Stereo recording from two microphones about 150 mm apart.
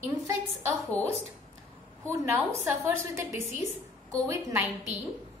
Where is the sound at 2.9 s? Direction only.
15° right (ahead or behind).